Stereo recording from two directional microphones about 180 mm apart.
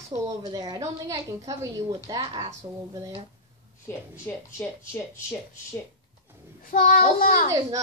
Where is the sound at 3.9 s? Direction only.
10° left (ahead or behind).